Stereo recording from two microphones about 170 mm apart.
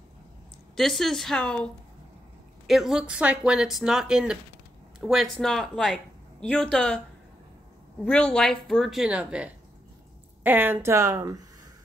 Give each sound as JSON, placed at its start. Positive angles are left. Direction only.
{"t": 0.7, "sound": "speech", "side_deg": 0}
{"t": 8.0, "sound": "speech", "side_deg": 5}